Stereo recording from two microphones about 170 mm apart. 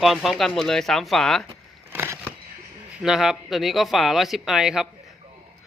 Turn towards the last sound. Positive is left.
turn(degrees=-5)  # may be behind; listen again after turning